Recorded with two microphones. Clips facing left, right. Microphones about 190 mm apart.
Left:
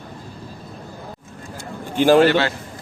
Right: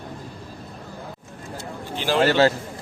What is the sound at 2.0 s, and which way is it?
Speech, 50° left (ahead or behind).